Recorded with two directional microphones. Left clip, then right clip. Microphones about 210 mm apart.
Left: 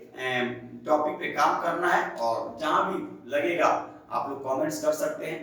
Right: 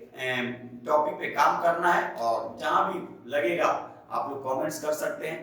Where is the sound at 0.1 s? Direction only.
15° right (ahead or behind).